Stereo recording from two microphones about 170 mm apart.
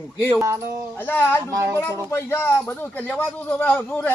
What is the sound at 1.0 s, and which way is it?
Speech, 10° left (ahead or behind).